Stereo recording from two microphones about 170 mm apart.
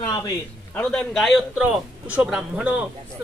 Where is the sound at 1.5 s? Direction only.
10° right (ahead or behind).